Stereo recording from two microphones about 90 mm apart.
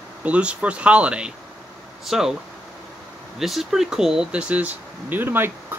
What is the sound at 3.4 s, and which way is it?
Speech, 5° right (ahead or behind).